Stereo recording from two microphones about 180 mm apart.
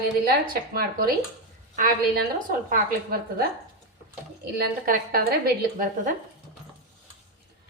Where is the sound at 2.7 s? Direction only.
55° right (ahead or behind).